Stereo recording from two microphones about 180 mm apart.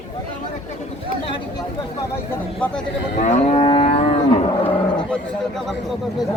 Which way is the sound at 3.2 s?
40° left (ahead or behind).